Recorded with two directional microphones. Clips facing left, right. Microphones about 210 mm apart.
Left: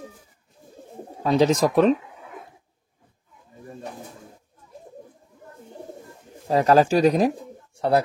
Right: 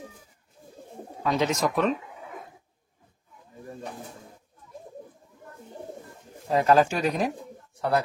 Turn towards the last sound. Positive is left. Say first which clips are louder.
# left 5 dB
turn(degrees=25)  # may be behind; listen again after turning